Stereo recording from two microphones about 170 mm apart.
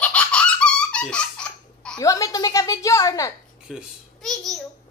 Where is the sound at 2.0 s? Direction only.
20° left (ahead or behind).